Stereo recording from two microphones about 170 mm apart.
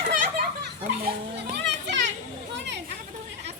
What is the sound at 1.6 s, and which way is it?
Children playing, 90° right.